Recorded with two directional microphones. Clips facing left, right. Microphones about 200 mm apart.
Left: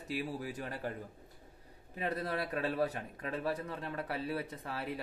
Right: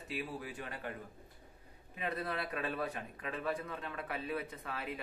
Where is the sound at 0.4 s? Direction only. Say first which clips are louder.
Left 4 dB; 40° left (ahead or behind).